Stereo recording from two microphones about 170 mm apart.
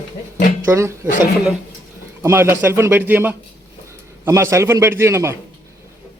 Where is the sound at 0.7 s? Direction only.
15° right (ahead or behind).